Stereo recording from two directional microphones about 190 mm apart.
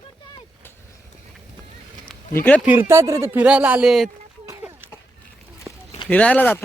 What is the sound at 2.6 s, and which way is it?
Speech, 10° right (ahead or behind).